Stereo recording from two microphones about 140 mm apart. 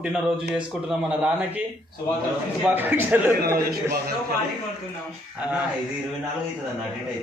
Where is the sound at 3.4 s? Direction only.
90° right.